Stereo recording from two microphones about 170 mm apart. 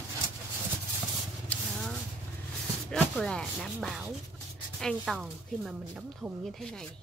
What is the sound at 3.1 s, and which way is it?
Speech, centre (ahead or behind).